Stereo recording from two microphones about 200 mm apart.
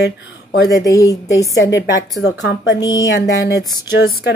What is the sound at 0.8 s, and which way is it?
Speech, 15° left (ahead or behind).